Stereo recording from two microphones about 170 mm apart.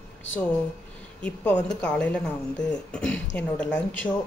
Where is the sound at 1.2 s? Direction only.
5° left (ahead or behind).